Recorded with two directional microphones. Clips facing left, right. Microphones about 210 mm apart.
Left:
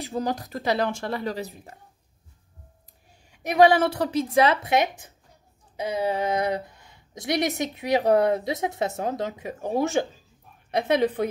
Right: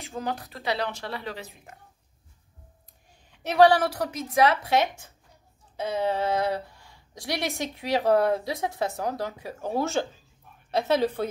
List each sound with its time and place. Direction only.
0.0 s a woman's voice: 35° left (ahead or behind)
3.3 s a sound: 15° left (ahead or behind)
3.8 s speech: 30° left (ahead or behind)
4.7 s a woman's voice: 15° left (ahead or behind)